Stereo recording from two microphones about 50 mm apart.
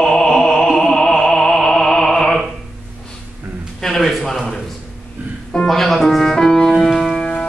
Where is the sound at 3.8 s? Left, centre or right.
Centre.